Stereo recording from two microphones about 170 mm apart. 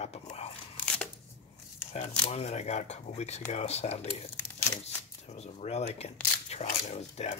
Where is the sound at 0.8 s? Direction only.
5° left (ahead or behind).